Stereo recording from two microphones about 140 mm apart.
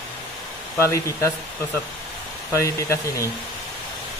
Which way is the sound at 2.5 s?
20° left (ahead or behind).